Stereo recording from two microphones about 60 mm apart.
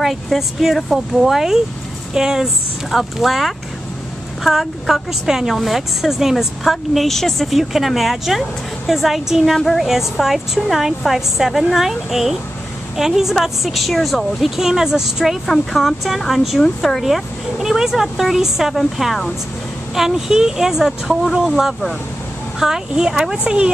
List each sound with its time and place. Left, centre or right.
0.0 s a woman's voice: centre
15.4 s a woman's voice: centre